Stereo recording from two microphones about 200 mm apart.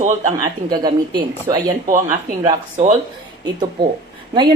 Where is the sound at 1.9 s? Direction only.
40° right (ahead or behind).